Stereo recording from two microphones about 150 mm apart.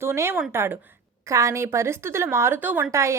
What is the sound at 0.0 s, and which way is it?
A woman's voice, 15° right (ahead or behind).